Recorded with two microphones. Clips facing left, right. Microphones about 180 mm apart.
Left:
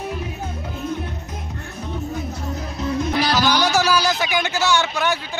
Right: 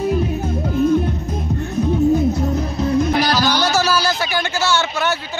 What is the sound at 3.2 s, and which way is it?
Music, 30° left (ahead or behind).